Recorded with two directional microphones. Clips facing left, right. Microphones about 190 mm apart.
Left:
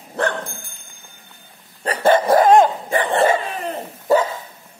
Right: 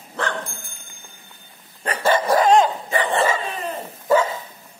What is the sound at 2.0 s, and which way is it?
Dog, 50° left (ahead or behind).